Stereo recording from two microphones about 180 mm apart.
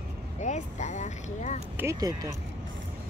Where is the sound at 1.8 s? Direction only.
20° right (ahead or behind).